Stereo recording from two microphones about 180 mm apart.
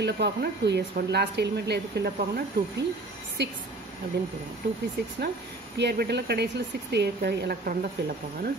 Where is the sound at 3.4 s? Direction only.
65° right (ahead or behind).